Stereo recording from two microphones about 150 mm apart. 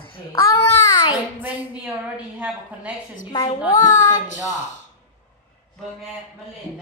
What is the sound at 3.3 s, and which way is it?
Speech, 35° left (ahead or behind).